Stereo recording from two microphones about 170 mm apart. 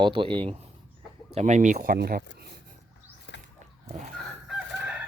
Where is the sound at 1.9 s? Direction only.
65° right (ahead or behind).